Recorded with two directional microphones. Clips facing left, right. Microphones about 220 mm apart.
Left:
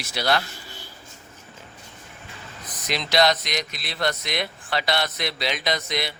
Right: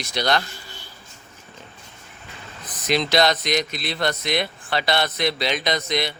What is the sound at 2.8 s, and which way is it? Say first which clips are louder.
Speech: right 2 dB; centre (ahead or behind).